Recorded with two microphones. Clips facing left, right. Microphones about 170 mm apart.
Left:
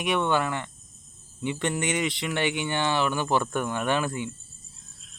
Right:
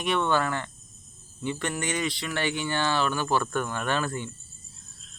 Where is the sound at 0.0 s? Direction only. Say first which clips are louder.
Even; 15° left (ahead or behind).